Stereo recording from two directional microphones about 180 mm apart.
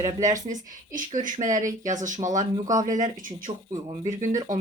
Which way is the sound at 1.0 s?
45° right (ahead or behind).